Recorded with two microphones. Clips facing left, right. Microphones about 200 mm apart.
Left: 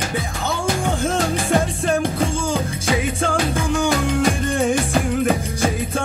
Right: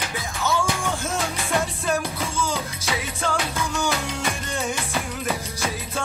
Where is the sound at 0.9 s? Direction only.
50° left (ahead or behind).